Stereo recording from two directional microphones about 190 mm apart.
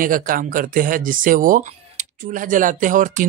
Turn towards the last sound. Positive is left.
turn(degrees=-45)  # may be behind; listen again after turning